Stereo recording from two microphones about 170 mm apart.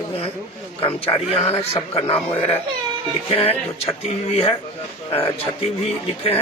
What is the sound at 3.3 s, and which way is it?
Speech, 35° left (ahead or behind).